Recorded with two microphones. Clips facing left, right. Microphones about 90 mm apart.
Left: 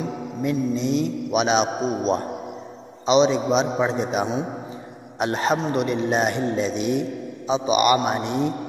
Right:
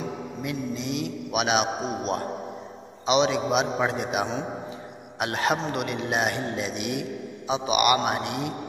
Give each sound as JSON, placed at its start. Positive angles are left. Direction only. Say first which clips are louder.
{"t": 0.5, "sound": "a man's voice", "louder": "left 8 dB", "side_deg": 40}
{"t": 1.3, "sound": "a man's voice", "louder": "left 3 dB", "side_deg": 30}
{"t": 5.2, "sound": "a man's voice", "louder": "left 4 dB", "side_deg": 30}